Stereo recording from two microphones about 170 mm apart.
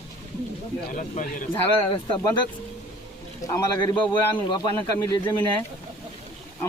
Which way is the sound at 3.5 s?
15° left (ahead or behind).